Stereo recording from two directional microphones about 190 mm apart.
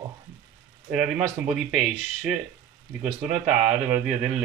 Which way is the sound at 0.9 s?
5° right (ahead or behind).